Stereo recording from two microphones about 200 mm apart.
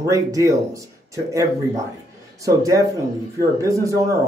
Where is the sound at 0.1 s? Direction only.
15° right (ahead or behind).